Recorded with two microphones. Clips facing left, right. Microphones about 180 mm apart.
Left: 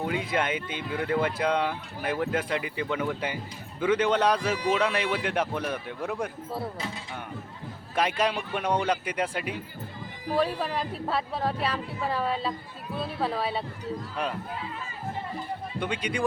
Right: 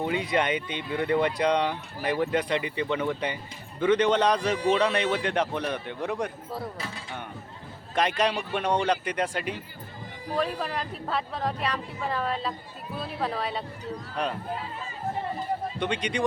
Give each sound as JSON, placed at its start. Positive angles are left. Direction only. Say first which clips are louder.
{"t": 0.0, "sound": "speech", "louder": "right 2 dB", "side_deg": 5}
{"t": 6.7, "sound": "speech", "louder": "left 2 dB", "side_deg": 20}
{"t": 8.0, "sound": "speech", "louder": "right 1 dB", "side_deg": 5}
{"t": 15.8, "sound": "speech", "louder": "left 1 dB", "side_deg": 5}